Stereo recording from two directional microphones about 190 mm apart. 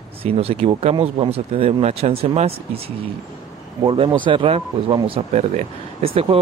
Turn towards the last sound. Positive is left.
turn(degrees=-30)  # may be behind; listen again after turning